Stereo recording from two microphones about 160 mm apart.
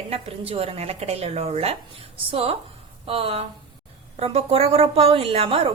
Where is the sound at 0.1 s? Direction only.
40° right (ahead or behind).